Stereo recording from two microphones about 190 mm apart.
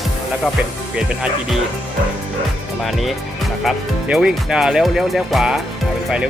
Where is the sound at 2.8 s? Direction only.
Centre (ahead or behind).